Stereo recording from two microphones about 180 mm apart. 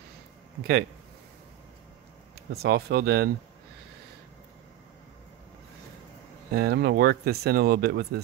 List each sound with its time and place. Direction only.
2.5 s speech: 65° right (ahead or behind)
6.5 s speech: 65° right (ahead or behind)